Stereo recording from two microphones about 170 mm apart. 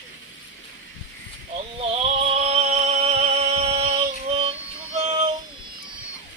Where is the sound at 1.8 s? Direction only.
35° right (ahead or behind).